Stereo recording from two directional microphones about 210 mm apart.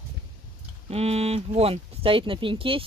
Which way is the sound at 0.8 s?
30° right (ahead or behind).